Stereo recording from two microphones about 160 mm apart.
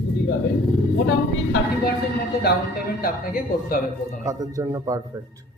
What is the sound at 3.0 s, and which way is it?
Speech, 65° left (ahead or behind).